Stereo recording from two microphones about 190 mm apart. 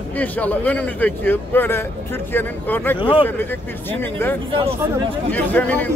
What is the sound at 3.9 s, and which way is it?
A man's voice, 10° left (ahead or behind).